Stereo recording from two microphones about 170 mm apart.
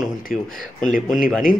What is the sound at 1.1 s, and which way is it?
Speech, centre (ahead or behind).